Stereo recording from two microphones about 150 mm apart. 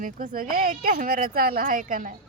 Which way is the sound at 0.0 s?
70° right (ahead or behind).